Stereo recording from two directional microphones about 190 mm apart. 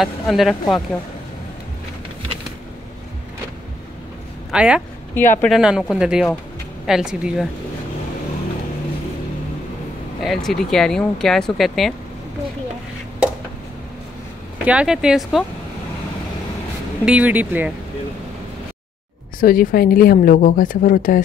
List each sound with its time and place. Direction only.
0.0 s speech: centre (ahead or behind)
4.5 s speech: 5° right (ahead or behind)
5.1 s speech: 10° left (ahead or behind)
5.5 s speech: 5° right (ahead or behind)
10.2 s speech: centre (ahead or behind)
14.6 s speech: 5° right (ahead or behind)
17.0 s speech: 5° right (ahead or behind)
19.4 s a woman's voice: 50° left (ahead or behind)